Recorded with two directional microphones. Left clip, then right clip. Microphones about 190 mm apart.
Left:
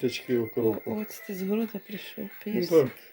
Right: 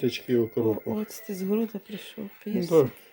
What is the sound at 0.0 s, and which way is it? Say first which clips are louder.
Speech: right 2 dB; 50° right (ahead or behind).